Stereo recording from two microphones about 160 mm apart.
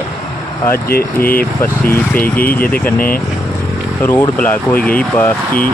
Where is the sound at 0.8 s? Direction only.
70° left (ahead or behind).